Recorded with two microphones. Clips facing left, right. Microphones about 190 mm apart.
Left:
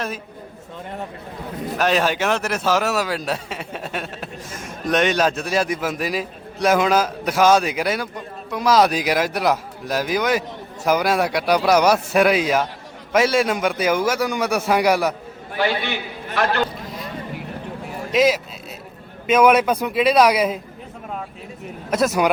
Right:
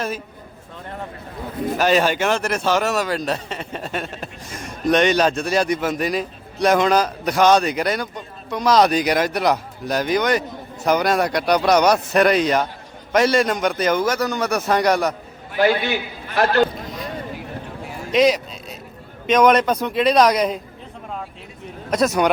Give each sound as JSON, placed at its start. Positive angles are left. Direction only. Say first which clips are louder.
{"t": 1.8, "sound": "a man's voice", "louder": "right 1 dB", "side_deg": 0}
{"t": 15.5, "sound": "a man's voice", "louder": "right 4 dB", "side_deg": -45}
{"t": 18.1, "sound": "a man's voice", "louder": "right 1 dB", "side_deg": 5}
{"t": 21.8, "sound": "a man's voice", "louder": "right 1 dB", "side_deg": 5}